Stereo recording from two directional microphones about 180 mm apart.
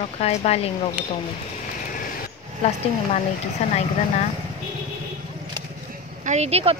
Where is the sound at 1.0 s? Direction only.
10° right (ahead or behind).